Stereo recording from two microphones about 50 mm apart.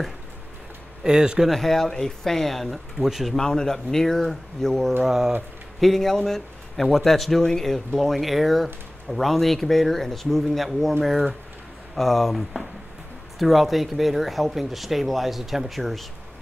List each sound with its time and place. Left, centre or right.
1.0 s speech: centre
1.4 s speech: centre
3.3 s speech: centre
5.0 s speech: centre
5.8 s speech: centre